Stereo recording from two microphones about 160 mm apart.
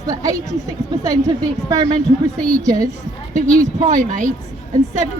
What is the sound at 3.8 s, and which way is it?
Speech, 50° right (ahead or behind).